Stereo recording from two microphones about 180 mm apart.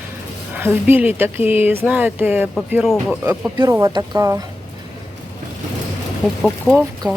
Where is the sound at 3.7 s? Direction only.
20° right (ahead or behind).